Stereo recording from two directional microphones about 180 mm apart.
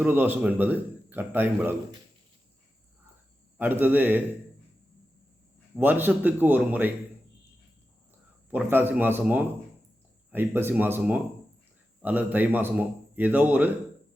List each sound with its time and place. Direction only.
0.0 s a man's voice: 10° right (ahead or behind)
3.6 s a man's voice: 10° right (ahead or behind)
5.7 s a man's voice: 10° right (ahead or behind)
8.4 s a man's voice: 10° right (ahead or behind)